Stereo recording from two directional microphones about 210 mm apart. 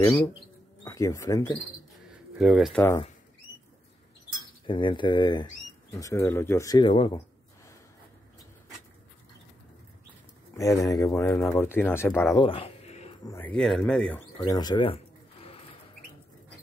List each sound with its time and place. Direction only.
0.8 s speech: 15° left (ahead or behind)
2.3 s speech: 5° right (ahead or behind)
4.6 s speech: 25° left (ahead or behind)
10.5 s speech: 15° left (ahead or behind)
12.4 s a sound: 25° left (ahead or behind)
13.2 s speech: 10° left (ahead or behind)
14.4 s speech: 20° left (ahead or behind)